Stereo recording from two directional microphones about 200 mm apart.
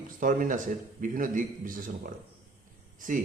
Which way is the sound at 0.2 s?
40° right (ahead or behind).